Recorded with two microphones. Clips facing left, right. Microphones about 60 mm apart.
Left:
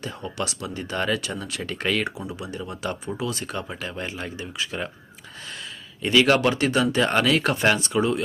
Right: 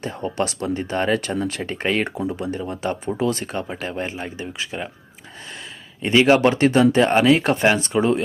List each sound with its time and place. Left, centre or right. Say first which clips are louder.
0.0 s speech: right 6 dB; right
6.0 s speech: right 4 dB; right